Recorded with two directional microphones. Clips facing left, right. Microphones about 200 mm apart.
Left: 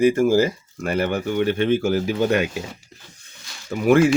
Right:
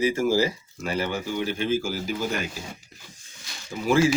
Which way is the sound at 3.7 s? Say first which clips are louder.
Left 6 dB; 60° left (ahead or behind).